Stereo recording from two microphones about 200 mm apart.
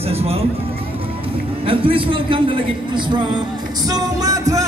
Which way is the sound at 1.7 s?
25° right (ahead or behind).